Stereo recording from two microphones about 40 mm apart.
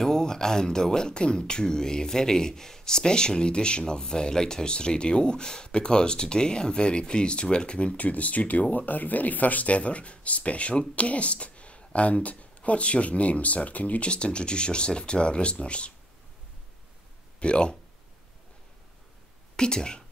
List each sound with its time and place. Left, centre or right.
0.0 s speech: centre
8.0 s speech: left
17.4 s speech: left
19.5 s speech: centre